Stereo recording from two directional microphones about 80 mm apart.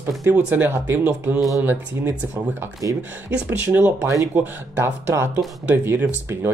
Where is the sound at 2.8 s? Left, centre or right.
Right.